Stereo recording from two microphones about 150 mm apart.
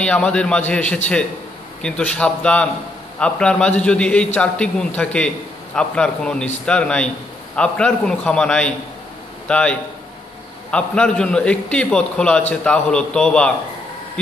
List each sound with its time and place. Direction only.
0.0 s a man's voice: 5° left (ahead or behind)